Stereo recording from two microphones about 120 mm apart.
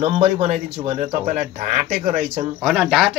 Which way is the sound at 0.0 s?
60° right (ahead or behind).